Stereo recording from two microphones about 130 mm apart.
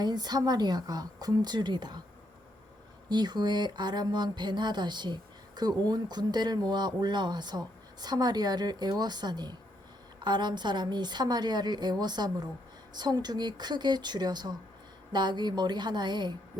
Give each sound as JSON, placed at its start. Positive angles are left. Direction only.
{"t": 0.0, "sound": "speech", "side_deg": -30}
{"t": 3.1, "sound": "speech", "side_deg": -35}